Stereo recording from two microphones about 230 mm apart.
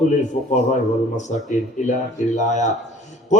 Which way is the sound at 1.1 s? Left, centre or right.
Left.